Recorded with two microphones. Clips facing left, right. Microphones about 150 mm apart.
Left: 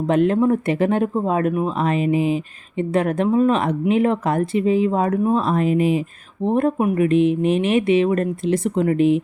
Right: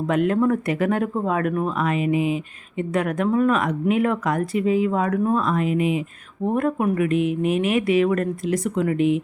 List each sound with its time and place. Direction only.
0.1 s speech: 30° left (ahead or behind)